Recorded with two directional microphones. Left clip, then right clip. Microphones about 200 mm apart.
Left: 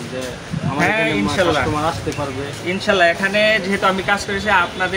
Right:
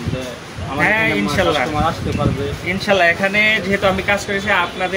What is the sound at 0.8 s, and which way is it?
Speech, 5° left (ahead or behind).